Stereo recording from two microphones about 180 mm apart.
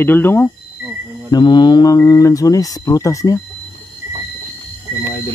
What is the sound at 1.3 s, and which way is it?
Speech, 25° left (ahead or behind).